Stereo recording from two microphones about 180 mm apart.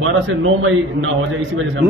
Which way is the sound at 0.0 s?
90° right.